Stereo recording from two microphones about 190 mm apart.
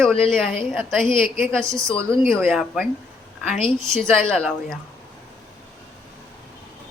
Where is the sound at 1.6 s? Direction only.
15° right (ahead or behind).